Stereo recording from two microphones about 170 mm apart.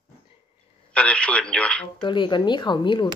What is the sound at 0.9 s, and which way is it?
Speech, 5° left (ahead or behind).